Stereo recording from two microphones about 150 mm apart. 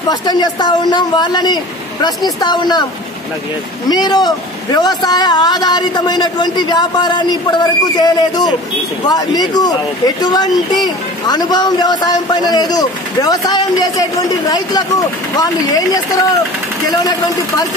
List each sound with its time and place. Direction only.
0.1 s a man's voice: 25° left (ahead or behind)
3.9 s a man's voice: 30° left (ahead or behind)